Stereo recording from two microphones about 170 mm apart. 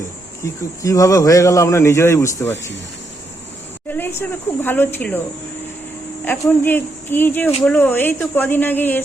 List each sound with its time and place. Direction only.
0.4 s speech: 20° left (ahead or behind)
3.8 s speech: 10° left (ahead or behind)
6.2 s speech: 10° left (ahead or behind)